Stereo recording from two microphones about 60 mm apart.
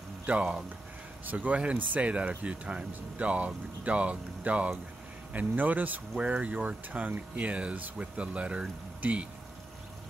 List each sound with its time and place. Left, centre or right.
1.2 s speech: right